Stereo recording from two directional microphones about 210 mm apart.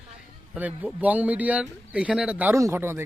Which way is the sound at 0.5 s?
5° right (ahead or behind).